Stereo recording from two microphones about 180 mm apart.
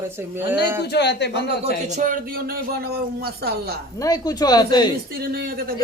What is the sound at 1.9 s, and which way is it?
A man's voice, 45° right (ahead or behind).